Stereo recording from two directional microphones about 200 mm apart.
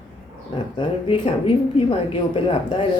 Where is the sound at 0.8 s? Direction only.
25° left (ahead or behind).